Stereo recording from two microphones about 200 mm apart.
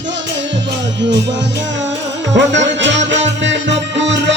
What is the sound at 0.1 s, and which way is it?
Music, 65° right (ahead or behind).